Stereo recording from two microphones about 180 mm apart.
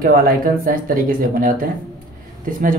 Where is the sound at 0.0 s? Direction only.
55° right (ahead or behind).